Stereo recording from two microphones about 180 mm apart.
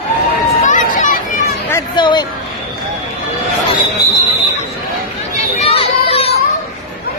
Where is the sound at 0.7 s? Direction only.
45° left (ahead or behind).